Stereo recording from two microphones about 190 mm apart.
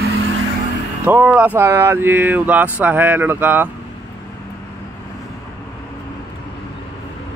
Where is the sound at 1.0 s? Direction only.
10° right (ahead or behind).